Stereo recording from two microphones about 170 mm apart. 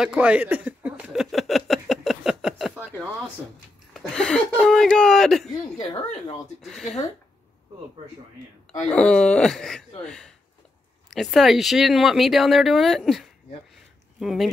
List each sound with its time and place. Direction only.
0.0 s a sound: 5° right (ahead or behind)
3.9 s speech: 5° left (ahead or behind)
5.8 s speech: 30° left (ahead or behind)
6.6 s speech: centre (ahead or behind)
8.8 s speech: 5° left (ahead or behind)